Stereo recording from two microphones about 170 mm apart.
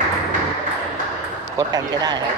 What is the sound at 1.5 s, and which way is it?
Speech, 25° right (ahead or behind).